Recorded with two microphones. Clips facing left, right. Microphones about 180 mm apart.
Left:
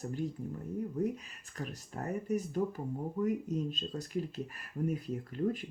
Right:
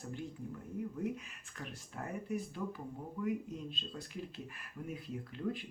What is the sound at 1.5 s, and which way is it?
Speech, 40° left (ahead or behind).